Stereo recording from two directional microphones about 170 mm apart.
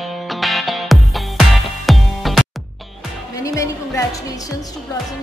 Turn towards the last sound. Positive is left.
turn(degrees=20)  # may be behind; listen again after turning